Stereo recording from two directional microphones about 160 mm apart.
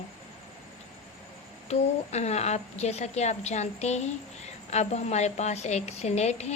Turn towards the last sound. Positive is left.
turn(degrees=45)  # may be behind; listen again after turning